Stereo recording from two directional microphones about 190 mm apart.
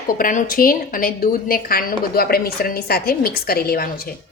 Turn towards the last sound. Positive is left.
turn(degrees=50)  # may be behind; listen again after turning